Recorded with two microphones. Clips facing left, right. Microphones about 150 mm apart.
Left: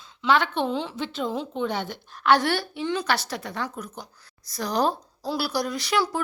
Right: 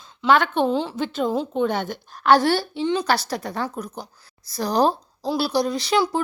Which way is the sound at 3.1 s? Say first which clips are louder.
Right 4 dB; 35° right (ahead or behind).